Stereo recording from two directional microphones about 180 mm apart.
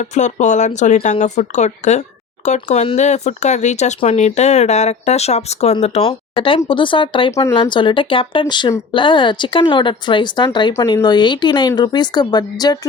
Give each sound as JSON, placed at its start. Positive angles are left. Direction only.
{"t": 0.0, "sound": "speech", "side_deg": 40}
{"t": 7.3, "sound": "speech", "side_deg": 15}
{"t": 7.5, "sound": "speech", "side_deg": 25}